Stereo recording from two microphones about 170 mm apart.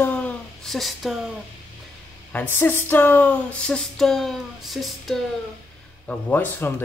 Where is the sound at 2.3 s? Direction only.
10° left (ahead or behind).